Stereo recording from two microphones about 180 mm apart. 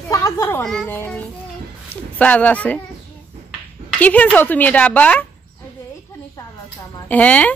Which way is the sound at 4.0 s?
10° left (ahead or behind).